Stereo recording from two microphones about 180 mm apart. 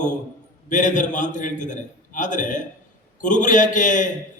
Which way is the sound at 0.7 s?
45° left (ahead or behind).